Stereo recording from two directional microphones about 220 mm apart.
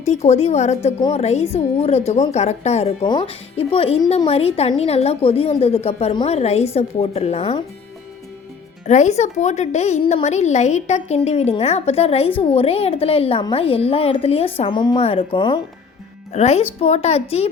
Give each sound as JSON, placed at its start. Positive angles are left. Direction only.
{"t": 0.0, "sound": "a woman's voice", "side_deg": 30}
{"t": 8.9, "sound": "a woman's voice", "side_deg": 30}